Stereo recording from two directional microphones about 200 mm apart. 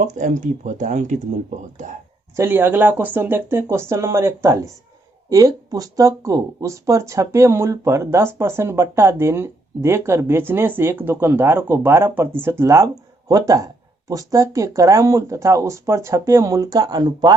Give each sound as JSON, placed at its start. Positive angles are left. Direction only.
{"t": 0.0, "sound": "speech", "side_deg": -35}
{"t": 2.3, "sound": "speech", "side_deg": -10}